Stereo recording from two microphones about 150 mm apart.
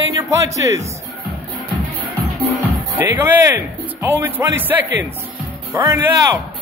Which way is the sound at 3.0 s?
15° right (ahead or behind).